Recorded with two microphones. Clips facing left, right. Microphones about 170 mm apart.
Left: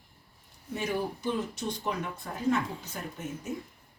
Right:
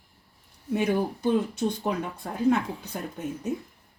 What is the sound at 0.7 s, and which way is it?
Speech, 60° right (ahead or behind).